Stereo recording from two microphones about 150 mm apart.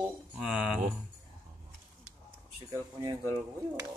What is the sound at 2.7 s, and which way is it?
Speech, 25° right (ahead or behind).